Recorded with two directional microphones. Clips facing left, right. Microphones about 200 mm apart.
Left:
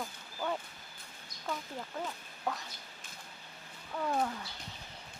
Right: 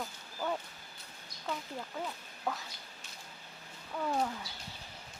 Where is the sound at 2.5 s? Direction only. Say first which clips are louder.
Even; centre (ahead or behind).